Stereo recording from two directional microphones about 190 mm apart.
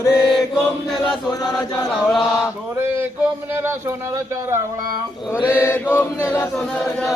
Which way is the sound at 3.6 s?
15° right (ahead or behind).